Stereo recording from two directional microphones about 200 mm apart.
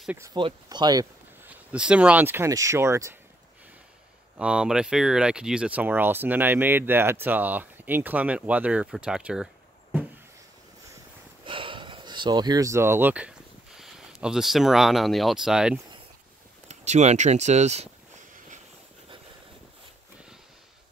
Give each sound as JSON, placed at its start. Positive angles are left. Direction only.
{"t": 0.0, "sound": "speech", "side_deg": -5}
{"t": 0.3, "sound": "speech", "side_deg": -25}
{"t": 1.7, "sound": "speech", "side_deg": -5}
{"t": 4.4, "sound": "speech", "side_deg": -5}
{"t": 11.4, "sound": "a sound", "side_deg": -25}
{"t": 13.7, "sound": "speech", "side_deg": 0}
{"t": 16.6, "sound": "speech", "side_deg": -35}